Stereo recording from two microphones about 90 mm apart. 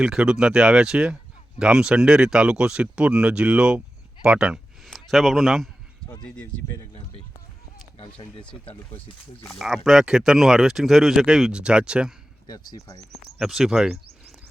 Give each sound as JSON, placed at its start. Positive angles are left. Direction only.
{"t": 0.0, "sound": "speech", "side_deg": -10}
{"t": 4.9, "sound": "speech", "side_deg": 0}
{"t": 7.9, "sound": "speech", "side_deg": 80}
{"t": 9.5, "sound": "speech", "side_deg": -5}
{"t": 12.5, "sound": "speech", "side_deg": 40}
{"t": 13.4, "sound": "speech", "side_deg": -5}